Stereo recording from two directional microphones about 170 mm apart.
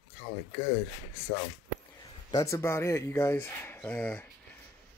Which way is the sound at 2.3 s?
20° left (ahead or behind).